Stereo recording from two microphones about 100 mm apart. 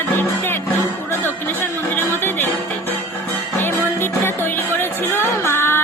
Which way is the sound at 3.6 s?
20° left (ahead or behind).